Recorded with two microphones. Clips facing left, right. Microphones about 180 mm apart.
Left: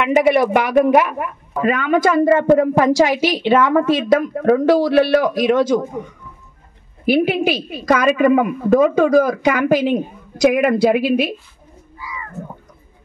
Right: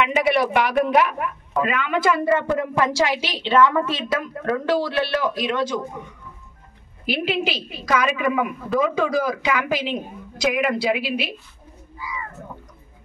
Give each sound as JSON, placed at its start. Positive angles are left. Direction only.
{"t": 0.1, "sound": "speech", "side_deg": 45}
{"t": 7.1, "sound": "speech", "side_deg": 50}